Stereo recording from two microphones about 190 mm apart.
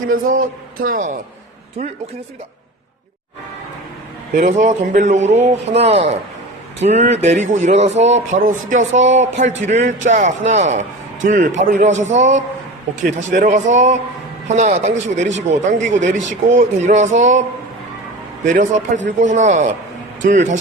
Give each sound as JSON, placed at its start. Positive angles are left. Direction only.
{"t": 0.1, "sound": "a man's voice", "side_deg": -45}
{"t": 4.4, "sound": "a man's voice", "side_deg": -40}
{"t": 18.4, "sound": "a man's voice", "side_deg": -40}